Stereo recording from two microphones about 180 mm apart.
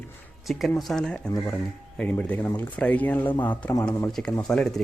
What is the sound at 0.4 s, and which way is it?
Speech, centre (ahead or behind).